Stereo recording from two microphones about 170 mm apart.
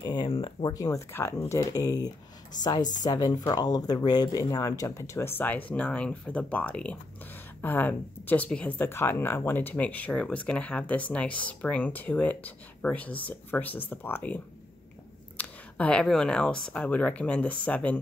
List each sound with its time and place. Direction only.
0.0 s speech: 25° left (ahead or behind); by 17.9 s 10° left (ahead or behind)